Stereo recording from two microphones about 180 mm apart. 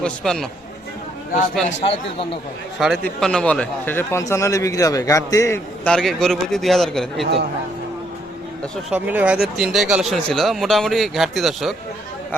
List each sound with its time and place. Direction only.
0.0 s speech: 5° left (ahead or behind)
1.6 s a man's voice: 35° left (ahead or behind)
2.7 s a man's voice: centre (ahead or behind); by 5.9 s 15° left (ahead or behind)
5.9 s speech: centre (ahead or behind)
8.6 s speech: 5° left (ahead or behind)
9.0 s speech: 5° right (ahead or behind)